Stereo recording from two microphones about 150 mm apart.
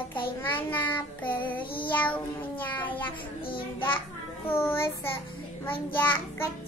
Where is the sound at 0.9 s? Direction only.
10° left (ahead or behind).